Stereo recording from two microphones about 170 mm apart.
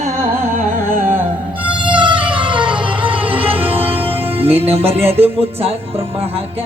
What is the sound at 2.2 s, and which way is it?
Music, 30° right (ahead or behind).